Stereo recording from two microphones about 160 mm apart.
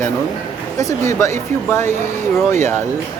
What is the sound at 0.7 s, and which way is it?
Speech, 20° left (ahead or behind).